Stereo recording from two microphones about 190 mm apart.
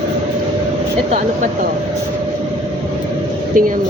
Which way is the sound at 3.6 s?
45° right (ahead or behind).